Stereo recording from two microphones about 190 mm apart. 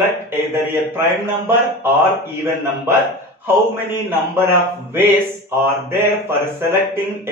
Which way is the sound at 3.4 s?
10° right (ahead or behind).